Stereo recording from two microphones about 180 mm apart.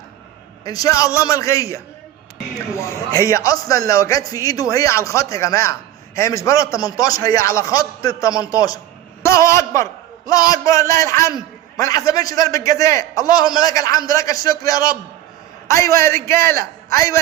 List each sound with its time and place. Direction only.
0.6 s a man's voice: 20° left (ahead or behind)